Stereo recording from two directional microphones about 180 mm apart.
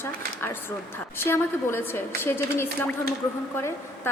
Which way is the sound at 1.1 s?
15° left (ahead or behind).